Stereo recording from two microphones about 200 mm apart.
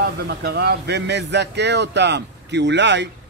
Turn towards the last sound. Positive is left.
turn(degrees=-60)  # may be behind; listen again after turning